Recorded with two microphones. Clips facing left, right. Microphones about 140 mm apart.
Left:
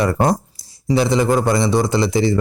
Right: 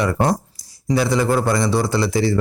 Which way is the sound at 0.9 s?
20° left (ahead or behind).